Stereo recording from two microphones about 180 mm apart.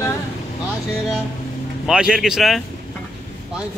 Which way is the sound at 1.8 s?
5° right (ahead or behind).